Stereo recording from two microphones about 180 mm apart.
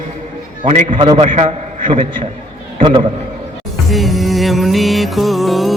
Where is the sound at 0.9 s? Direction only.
30° right (ahead or behind).